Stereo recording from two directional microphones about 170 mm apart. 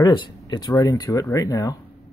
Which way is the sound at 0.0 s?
25° left (ahead or behind).